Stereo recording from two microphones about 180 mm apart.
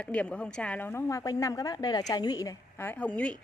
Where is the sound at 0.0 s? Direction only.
5° left (ahead or behind).